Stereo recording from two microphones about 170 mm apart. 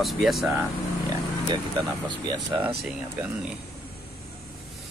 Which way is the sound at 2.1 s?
25° right (ahead or behind).